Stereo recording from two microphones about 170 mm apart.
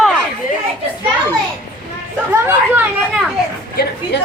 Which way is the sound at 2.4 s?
15° right (ahead or behind).